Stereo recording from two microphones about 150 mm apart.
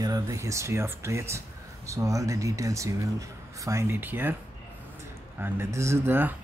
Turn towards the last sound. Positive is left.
turn(degrees=-15)  # may be behind; listen again after turning